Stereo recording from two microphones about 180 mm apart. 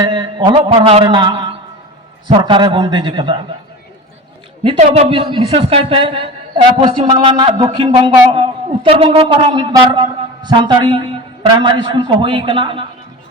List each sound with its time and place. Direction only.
0.0 s speech: 25° right (ahead or behind)
4.8 s speech: 35° right (ahead or behind)